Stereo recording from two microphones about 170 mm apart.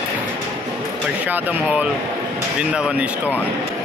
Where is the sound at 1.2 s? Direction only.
10° right (ahead or behind).